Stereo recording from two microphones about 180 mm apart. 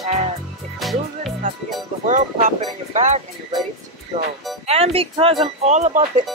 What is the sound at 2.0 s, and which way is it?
Speech, 45° right (ahead or behind).